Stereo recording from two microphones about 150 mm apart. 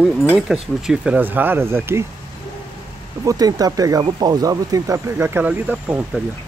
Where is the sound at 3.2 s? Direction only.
25° right (ahead or behind).